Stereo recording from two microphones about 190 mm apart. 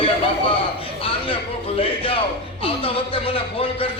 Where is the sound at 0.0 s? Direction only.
30° left (ahead or behind).